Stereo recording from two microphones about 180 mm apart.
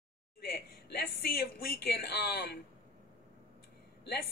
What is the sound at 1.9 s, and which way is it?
Speech, 65° left (ahead or behind).